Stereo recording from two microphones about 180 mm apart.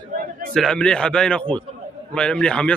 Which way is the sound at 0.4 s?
5° left (ahead or behind).